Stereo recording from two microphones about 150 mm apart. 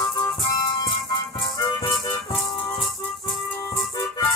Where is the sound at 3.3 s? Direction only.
Centre (ahead or behind).